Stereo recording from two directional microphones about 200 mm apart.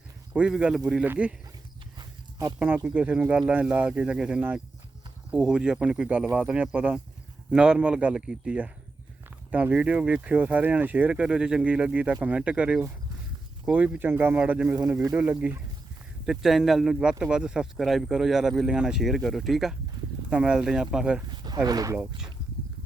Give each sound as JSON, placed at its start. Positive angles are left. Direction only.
{"t": 0.3, "sound": "speech", "side_deg": -5}
{"t": 2.0, "sound": "a sound", "side_deg": -20}
{"t": 2.6, "sound": "speech", "side_deg": -5}
{"t": 21.4, "sound": "speech", "side_deg": -20}